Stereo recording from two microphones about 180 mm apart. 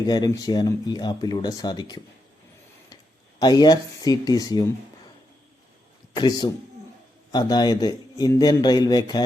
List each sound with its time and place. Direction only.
0.1 s speech: 20° left (ahead or behind)
6.1 s speech: 25° left (ahead or behind)